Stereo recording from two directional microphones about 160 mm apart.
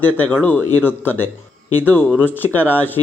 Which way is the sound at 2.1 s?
10° right (ahead or behind).